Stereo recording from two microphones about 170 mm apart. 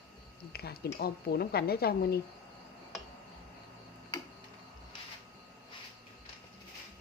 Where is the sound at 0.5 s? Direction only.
65° left (ahead or behind).